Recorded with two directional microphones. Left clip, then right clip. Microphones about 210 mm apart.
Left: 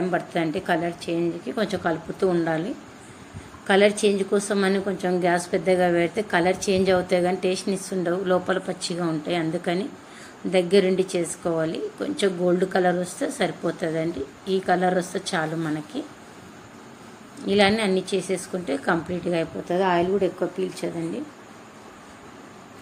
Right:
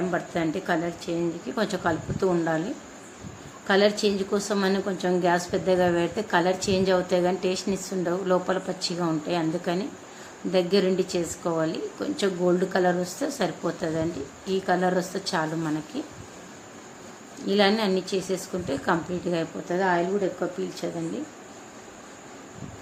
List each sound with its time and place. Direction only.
0.1 s a woman's voice: centre (ahead or behind)
17.4 s a woman's voice: centre (ahead or behind)